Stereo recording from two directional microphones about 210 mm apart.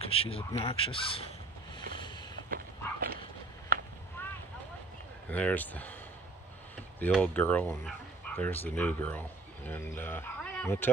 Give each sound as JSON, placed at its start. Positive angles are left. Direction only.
{"t": 0.0, "sound": "speech", "side_deg": 25}
{"t": 2.0, "sound": "vehicle", "side_deg": 20}
{"t": 2.5, "sound": "dog", "side_deg": -45}
{"t": 4.2, "sound": "vehicle", "side_deg": 10}
{"t": 5.3, "sound": "speech", "side_deg": 5}
{"t": 7.1, "sound": "speech", "side_deg": 5}